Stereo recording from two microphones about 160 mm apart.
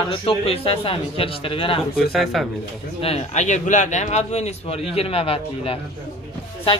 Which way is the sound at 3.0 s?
40° left (ahead or behind).